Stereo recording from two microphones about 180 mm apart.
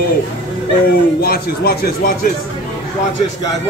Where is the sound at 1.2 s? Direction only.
55° left (ahead or behind).